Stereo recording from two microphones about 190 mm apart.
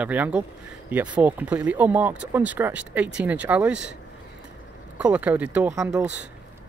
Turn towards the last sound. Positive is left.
turn(degrees=-5)  # may be behind; listen again after turning